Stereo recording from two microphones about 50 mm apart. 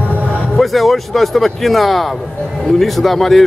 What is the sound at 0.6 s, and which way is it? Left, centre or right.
A man's voice, centre.